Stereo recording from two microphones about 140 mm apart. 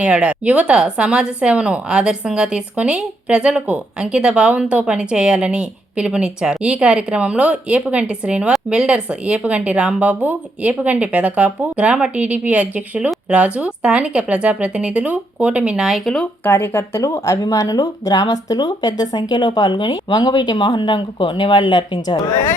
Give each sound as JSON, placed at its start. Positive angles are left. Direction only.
{"t": 0.0, "sound": "a woman's voice", "side_deg": -10}
{"t": 16.4, "sound": "speech", "side_deg": 15}